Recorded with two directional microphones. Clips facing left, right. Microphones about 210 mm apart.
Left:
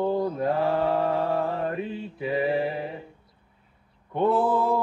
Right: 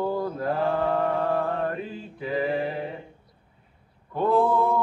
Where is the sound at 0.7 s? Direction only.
25° left (ahead or behind).